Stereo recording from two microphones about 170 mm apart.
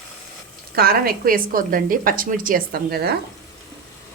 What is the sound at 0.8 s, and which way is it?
A woman's voice, 60° right (ahead or behind).